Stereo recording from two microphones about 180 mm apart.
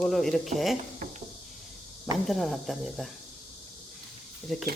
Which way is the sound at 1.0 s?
50° right (ahead or behind).